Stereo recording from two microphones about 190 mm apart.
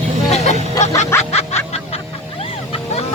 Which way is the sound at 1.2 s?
35° left (ahead or behind).